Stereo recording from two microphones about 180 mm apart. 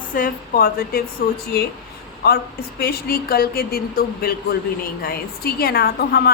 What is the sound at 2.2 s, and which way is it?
A woman's voice, 60° left (ahead or behind).